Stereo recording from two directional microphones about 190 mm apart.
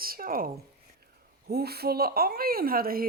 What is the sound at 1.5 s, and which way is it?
Speech, 55° right (ahead or behind).